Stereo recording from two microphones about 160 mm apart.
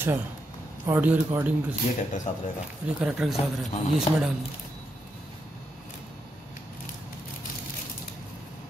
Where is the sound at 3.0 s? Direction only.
5° right (ahead or behind).